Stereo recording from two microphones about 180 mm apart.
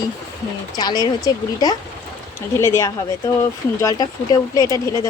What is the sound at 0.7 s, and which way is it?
Speech, 20° left (ahead or behind).